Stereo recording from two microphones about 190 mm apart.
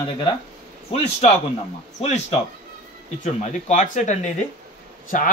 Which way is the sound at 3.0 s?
35° left (ahead or behind).